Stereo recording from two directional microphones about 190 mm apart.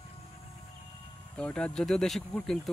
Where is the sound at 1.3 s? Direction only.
5° left (ahead or behind).